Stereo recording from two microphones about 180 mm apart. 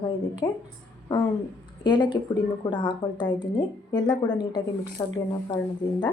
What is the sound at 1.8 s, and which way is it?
A woman's voice, 25° left (ahead or behind).